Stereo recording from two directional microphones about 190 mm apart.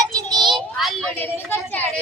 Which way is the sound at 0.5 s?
Centre (ahead or behind).